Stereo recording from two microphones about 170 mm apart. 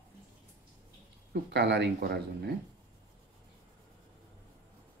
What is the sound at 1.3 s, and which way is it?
Speech, 80° right.